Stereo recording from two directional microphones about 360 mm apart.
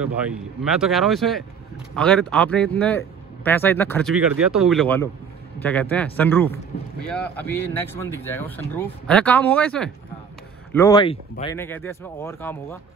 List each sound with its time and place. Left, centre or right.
0.0 s a man's voice: centre